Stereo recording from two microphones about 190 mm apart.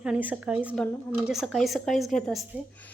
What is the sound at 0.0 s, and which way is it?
A woman's voice, 5° right (ahead or behind).